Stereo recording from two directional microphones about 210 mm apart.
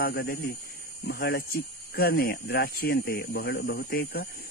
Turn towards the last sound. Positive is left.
turn(degrees=45)  # may be behind; listen again after turning